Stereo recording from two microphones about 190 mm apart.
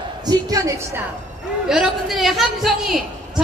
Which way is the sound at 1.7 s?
Centre (ahead or behind).